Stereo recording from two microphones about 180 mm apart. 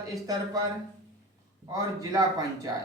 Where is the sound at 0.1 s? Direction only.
20° right (ahead or behind).